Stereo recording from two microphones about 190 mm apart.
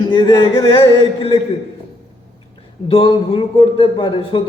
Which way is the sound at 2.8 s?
30° left (ahead or behind).